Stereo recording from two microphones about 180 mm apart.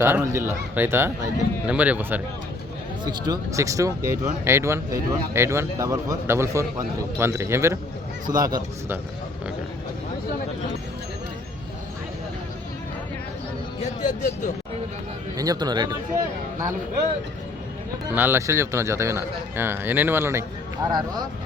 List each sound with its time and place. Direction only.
0.0 s a man's voice: 15° right (ahead or behind)
3.0 s a man's voice: 25° right (ahead or behind)
13.8 s speech: 45° left (ahead or behind)
15.4 s speech: 20° right (ahead or behind)
18.1 s a man's voice: 10° right (ahead or behind)